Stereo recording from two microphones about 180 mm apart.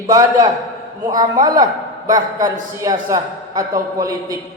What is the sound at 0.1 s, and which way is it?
Speech, 20° right (ahead or behind).